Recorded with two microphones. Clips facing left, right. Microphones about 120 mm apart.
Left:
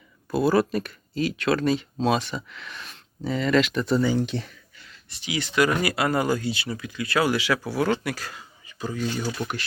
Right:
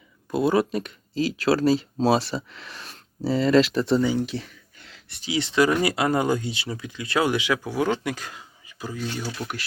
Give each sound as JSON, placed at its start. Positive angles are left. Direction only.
{"t": 0.3, "sound": "speech", "side_deg": -20}
{"t": 4.0, "sound": "speech", "side_deg": -10}
{"t": 4.8, "sound": "a sound", "side_deg": -65}
{"t": 5.2, "sound": "speech", "side_deg": -25}
{"t": 8.9, "sound": "speech", "side_deg": 0}